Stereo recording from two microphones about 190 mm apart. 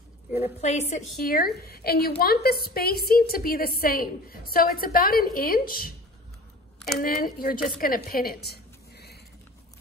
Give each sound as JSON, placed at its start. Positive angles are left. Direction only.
{"t": 0.3, "sound": "a woman's voice", "side_deg": 35}
{"t": 1.1, "sound": "a woman's voice", "side_deg": 50}
{"t": 7.0, "sound": "a woman's voice", "side_deg": 50}